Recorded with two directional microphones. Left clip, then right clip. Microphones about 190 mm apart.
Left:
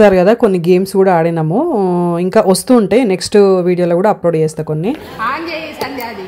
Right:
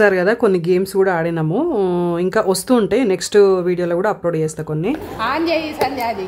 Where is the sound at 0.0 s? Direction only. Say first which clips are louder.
Left 6 dB; 15° left (ahead or behind).